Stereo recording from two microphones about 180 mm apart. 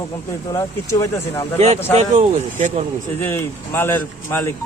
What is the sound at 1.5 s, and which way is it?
A man's voice, 40° right (ahead or behind).